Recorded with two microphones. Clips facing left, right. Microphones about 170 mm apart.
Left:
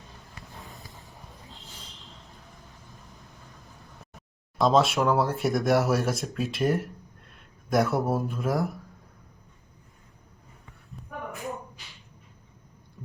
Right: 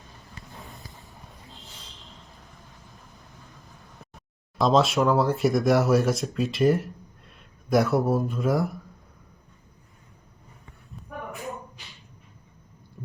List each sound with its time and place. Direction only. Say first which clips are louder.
0.6 s vehicle: right 1 dB; centre (ahead or behind)
4.5 s speech: right 1 dB; centre (ahead or behind)